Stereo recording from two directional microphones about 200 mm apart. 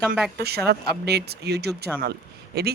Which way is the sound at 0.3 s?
55° right (ahead or behind).